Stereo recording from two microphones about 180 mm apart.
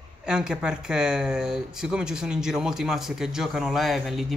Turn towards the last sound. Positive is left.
turn(degrees=0)  # may be behind; listen again after turning